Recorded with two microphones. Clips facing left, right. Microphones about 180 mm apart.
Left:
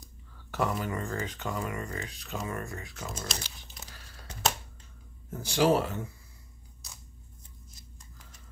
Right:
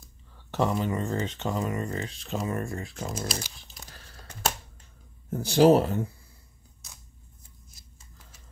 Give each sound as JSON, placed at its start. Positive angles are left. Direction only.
{"t": 0.5, "sound": "speech", "side_deg": -25}
{"t": 3.1, "sound": "speech", "side_deg": -5}
{"t": 5.3, "sound": "speech", "side_deg": -35}